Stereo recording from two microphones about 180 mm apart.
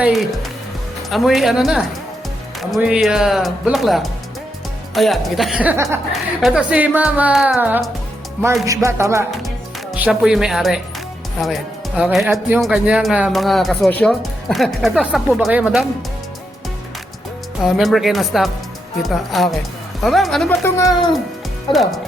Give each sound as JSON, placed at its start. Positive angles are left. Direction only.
{"t": 0.0, "sound": "speech", "side_deg": 0}
{"t": 8.6, "sound": "speech", "side_deg": -15}
{"t": 12.3, "sound": "speech", "side_deg": -15}
{"t": 12.6, "sound": "speech", "side_deg": 0}
{"t": 17.6, "sound": "speech", "side_deg": 0}
{"t": 21.7, "sound": "speech", "side_deg": 0}